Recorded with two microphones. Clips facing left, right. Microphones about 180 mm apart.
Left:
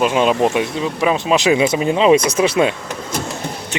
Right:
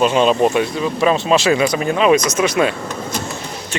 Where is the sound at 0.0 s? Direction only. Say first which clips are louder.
Right 1 dB; 10° left (ahead or behind).